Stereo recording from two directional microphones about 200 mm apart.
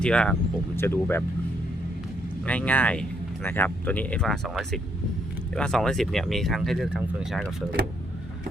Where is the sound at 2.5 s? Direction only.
5° left (ahead or behind).